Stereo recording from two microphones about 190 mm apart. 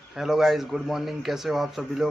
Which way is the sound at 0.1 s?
Centre (ahead or behind).